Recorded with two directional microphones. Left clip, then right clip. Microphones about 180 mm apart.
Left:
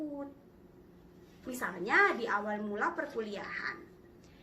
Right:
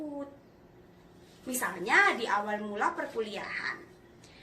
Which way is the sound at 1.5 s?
15° right (ahead or behind).